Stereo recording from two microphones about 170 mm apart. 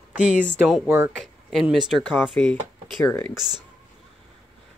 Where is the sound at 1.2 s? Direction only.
Centre (ahead or behind).